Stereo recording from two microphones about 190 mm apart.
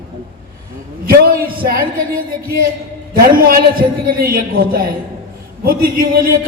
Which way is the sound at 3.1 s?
50° right (ahead or behind).